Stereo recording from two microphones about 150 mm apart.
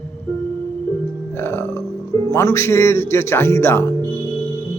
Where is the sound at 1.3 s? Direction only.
15° left (ahead or behind).